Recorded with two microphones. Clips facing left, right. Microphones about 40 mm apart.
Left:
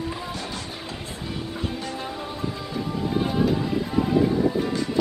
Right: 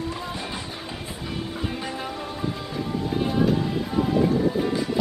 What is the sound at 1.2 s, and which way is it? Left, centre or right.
Music, centre.